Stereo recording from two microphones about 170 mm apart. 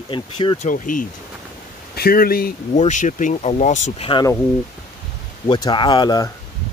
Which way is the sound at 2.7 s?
45° left (ahead or behind).